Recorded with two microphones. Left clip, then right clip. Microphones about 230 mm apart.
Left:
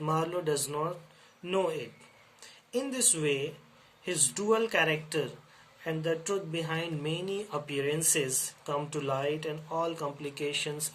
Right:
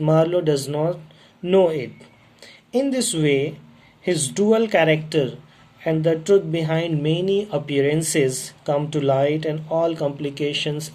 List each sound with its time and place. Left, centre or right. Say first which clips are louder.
0.0 s speech: right 13 dB; centre